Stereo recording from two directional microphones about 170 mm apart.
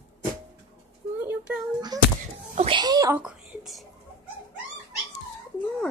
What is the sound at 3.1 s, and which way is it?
Speech, 5° right (ahead or behind).